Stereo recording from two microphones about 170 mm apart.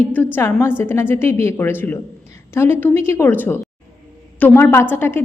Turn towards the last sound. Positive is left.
turn(degrees=15)  # may be behind; listen again after turning